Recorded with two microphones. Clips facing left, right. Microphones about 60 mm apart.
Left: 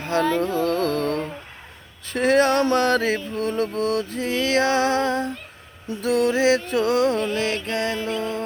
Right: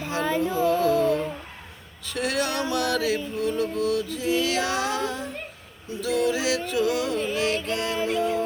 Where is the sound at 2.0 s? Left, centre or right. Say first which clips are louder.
Left 8 dB; left.